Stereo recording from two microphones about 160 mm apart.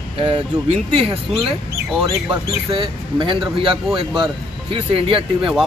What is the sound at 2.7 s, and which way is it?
Speech, 30° right (ahead or behind).